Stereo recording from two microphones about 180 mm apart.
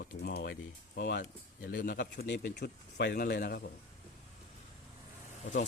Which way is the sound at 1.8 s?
50° left (ahead or behind).